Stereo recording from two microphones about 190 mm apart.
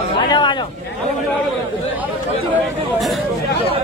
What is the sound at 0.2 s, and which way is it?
Speech, 25° left (ahead or behind).